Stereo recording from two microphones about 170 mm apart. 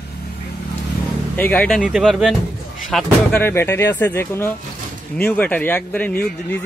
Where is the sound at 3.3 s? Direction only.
10° left (ahead or behind).